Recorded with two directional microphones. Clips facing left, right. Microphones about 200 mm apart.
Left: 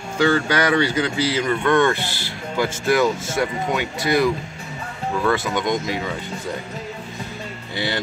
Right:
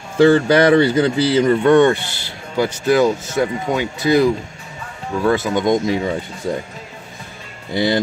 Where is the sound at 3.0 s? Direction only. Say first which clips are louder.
Right 4 dB; 20° right (ahead or behind).